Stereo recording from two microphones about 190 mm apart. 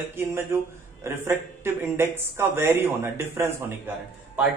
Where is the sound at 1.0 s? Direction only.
10° right (ahead or behind).